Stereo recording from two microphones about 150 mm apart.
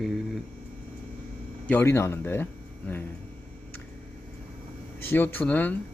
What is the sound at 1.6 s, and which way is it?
Speech, 15° left (ahead or behind).